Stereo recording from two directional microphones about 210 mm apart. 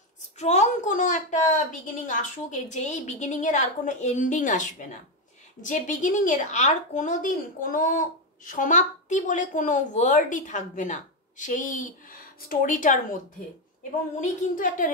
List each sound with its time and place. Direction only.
0.4 s a woman's voice: 30° left (ahead or behind)
14.2 s a woman's voice: 40° left (ahead or behind)